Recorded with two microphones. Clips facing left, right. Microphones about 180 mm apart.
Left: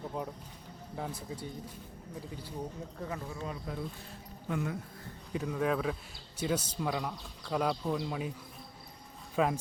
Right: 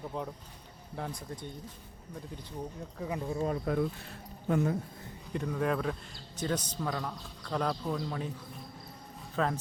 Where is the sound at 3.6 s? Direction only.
65° right (ahead or behind).